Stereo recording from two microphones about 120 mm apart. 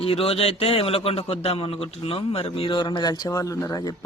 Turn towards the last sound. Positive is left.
turn(degrees=30)  # may be behind; listen again after turning